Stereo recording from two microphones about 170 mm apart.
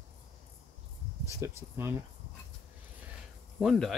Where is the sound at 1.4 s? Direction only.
15° right (ahead or behind).